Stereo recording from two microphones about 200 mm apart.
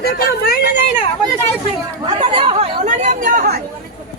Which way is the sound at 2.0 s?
25° right (ahead or behind).